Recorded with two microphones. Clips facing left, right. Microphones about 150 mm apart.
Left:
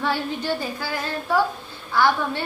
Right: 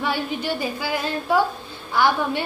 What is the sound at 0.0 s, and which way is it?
A woman's voice, 10° right (ahead or behind).